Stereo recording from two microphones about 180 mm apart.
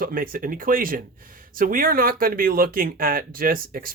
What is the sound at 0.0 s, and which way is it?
Speech, 50° right (ahead or behind).